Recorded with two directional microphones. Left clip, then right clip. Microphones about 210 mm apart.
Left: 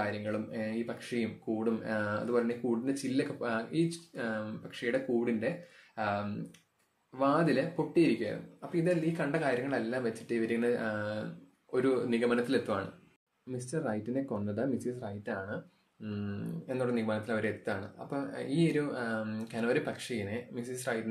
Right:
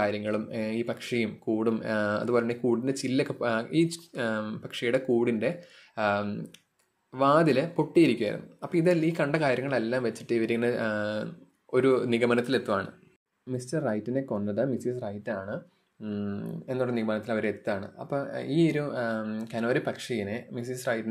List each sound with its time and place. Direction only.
0.0 s speech: 40° right (ahead or behind)